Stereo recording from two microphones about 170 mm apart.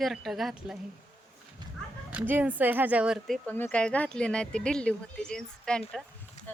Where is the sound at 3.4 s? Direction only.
10° left (ahead or behind).